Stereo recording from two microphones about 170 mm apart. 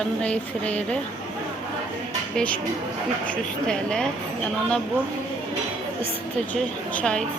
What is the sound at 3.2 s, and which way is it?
Speech, 5° left (ahead or behind).